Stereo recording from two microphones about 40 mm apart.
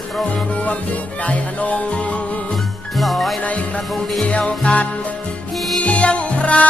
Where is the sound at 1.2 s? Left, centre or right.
Left.